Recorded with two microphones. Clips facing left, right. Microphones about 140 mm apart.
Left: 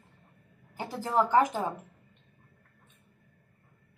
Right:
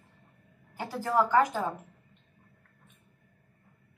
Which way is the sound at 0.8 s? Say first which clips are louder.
Right 1 dB; 20° left (ahead or behind).